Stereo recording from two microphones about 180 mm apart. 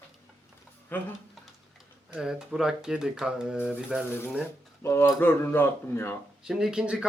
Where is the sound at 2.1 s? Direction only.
5° right (ahead or behind).